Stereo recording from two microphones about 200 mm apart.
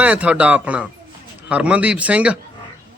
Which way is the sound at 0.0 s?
5° right (ahead or behind).